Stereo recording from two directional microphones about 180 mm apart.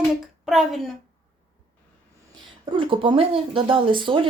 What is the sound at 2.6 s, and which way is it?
Speech, 30° right (ahead or behind).